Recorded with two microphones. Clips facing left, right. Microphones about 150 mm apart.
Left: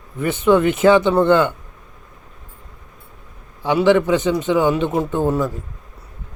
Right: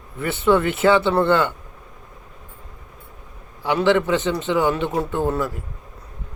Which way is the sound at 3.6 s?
15° left (ahead or behind).